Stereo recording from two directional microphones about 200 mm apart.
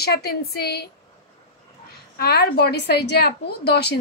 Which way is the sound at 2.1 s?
55° left (ahead or behind).